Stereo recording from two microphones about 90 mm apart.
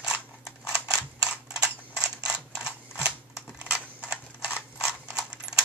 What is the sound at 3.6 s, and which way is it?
Typing, 10° right (ahead or behind).